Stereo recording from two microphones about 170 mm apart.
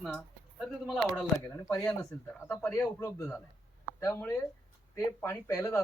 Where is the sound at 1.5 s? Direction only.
20° left (ahead or behind).